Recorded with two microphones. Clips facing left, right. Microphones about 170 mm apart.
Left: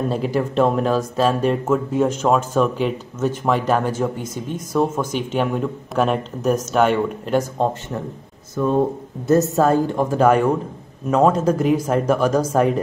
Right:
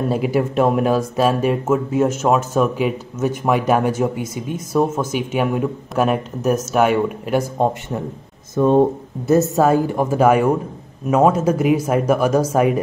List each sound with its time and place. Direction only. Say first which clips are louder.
0.1 s speech: right 2 dB; 10° right (ahead or behind)
9.3 s speech: right 1 dB; 10° right (ahead or behind)